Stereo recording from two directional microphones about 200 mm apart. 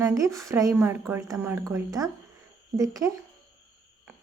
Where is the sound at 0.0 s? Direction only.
15° right (ahead or behind).